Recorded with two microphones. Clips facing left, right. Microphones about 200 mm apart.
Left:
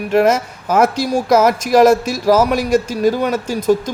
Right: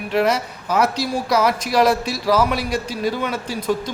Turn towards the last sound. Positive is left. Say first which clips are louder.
# left 7 dB
turn(degrees=45)  # may be behind; listen again after turning